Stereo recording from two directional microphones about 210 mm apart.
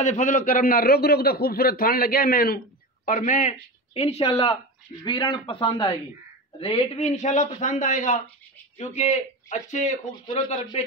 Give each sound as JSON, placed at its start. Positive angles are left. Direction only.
{"t": 0.0, "sound": "a man's voice", "side_deg": 35}